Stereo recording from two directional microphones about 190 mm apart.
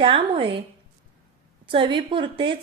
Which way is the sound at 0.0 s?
25° right (ahead or behind).